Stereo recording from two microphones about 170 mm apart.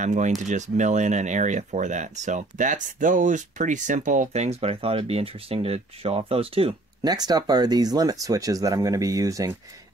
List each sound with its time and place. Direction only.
0.0 s speech: 45° right (ahead or behind)
7.0 s speech: 25° right (ahead or behind)